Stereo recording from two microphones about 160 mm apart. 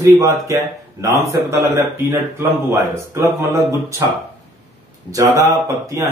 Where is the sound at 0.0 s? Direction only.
20° right (ahead or behind).